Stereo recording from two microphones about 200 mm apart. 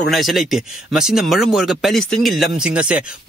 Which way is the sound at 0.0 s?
Centre (ahead or behind).